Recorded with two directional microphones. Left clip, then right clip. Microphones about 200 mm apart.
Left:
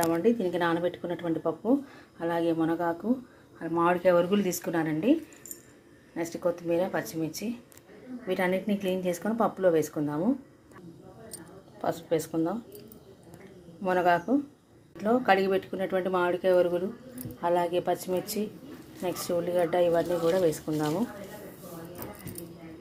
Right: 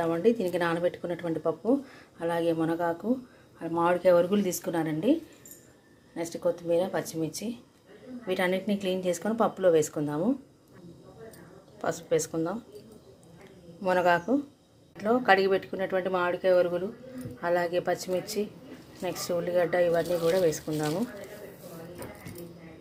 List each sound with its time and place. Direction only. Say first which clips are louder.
0.0 s speech: even; centre (ahead or behind)
6.1 s speech: even; centre (ahead or behind)
11.8 s speech: right 1 dB; centre (ahead or behind)
13.8 s speech: right 1 dB; centre (ahead or behind)